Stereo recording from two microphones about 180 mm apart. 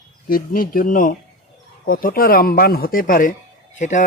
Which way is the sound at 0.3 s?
55° left (ahead or behind).